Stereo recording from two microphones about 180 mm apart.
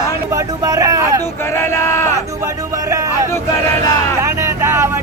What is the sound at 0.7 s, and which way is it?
Speech, 20° right (ahead or behind).